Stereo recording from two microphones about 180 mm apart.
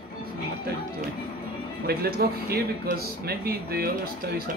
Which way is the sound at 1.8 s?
60° right (ahead or behind).